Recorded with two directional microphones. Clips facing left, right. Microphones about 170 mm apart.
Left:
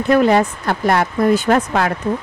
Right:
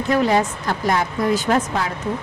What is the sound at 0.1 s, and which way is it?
Speech, 60° left (ahead or behind).